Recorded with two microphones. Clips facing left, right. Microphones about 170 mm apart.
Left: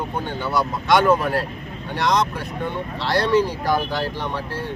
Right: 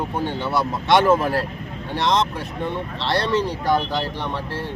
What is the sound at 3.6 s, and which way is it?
Speech, 25° right (ahead or behind).